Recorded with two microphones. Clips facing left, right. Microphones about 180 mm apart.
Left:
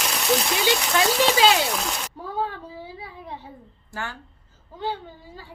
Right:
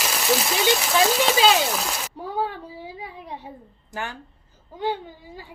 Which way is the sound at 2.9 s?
15° right (ahead or behind).